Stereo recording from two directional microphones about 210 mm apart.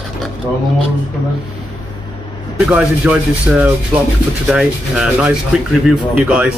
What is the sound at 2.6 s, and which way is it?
Speech, 5° right (ahead or behind).